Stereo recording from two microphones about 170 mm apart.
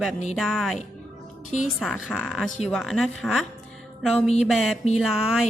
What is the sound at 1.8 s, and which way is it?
Speech, centre (ahead or behind).